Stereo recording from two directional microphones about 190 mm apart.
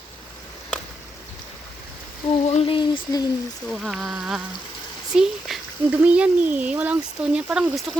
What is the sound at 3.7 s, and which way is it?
Speech, centre (ahead or behind).